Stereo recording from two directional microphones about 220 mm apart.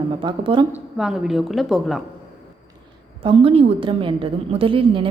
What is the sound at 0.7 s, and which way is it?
Speech, 5° right (ahead or behind).